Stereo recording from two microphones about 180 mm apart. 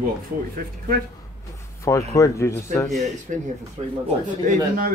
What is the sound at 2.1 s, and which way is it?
Speech, 15° left (ahead or behind).